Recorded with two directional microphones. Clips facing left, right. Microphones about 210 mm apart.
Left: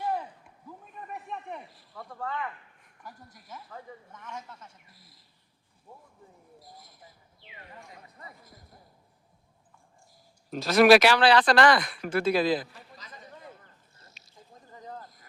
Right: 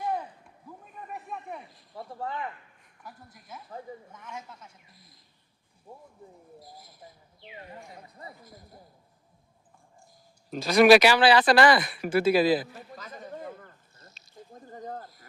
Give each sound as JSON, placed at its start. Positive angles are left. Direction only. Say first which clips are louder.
{"t": 1.0, "sound": "a sound", "louder": "even", "side_deg": 0}
{"t": 2.0, "sound": "speech", "louder": "right 1 dB", "side_deg": -25}
{"t": 4.1, "sound": "speech", "louder": "even", "side_deg": -10}
{"t": 4.9, "sound": "speech", "louder": "right 1 dB", "side_deg": 5}
{"t": 6.6, "sound": "speech", "louder": "right 3 dB", "side_deg": 0}
{"t": 7.7, "sound": "speech", "louder": "right 4 dB", "side_deg": -30}
{"t": 10.5, "sound": "speech", "louder": "right 1 dB", "side_deg": 0}
{"t": 12.7, "sound": "a sound", "louder": "right 7 dB", "side_deg": -50}